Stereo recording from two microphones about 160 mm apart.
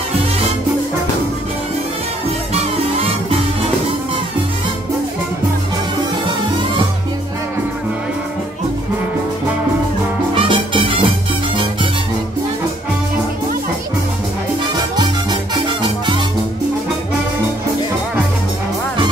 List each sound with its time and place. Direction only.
2.5 s music: 40° right (ahead or behind)
10.3 s music: 35° right (ahead or behind)